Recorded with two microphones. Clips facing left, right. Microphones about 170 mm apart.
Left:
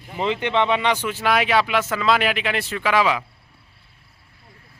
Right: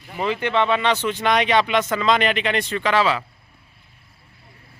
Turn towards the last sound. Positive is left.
turn(degrees=10)  # may be behind; listen again after turning